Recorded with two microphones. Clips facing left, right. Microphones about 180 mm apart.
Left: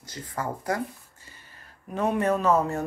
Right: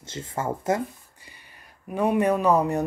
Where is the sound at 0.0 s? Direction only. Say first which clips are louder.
Right 3 dB; 25° right (ahead or behind).